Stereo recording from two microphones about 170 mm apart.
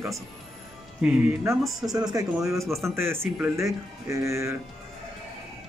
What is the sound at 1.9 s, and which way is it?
Speech, 20° right (ahead or behind).